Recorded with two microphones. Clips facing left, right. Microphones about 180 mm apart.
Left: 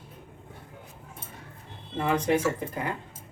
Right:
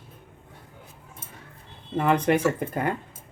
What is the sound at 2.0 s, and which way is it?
Speech, 60° right (ahead or behind).